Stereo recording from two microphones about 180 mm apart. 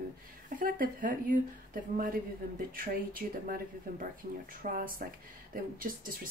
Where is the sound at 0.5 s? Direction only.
50° right (ahead or behind).